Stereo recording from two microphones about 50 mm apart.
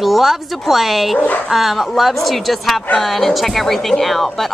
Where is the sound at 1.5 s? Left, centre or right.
Centre.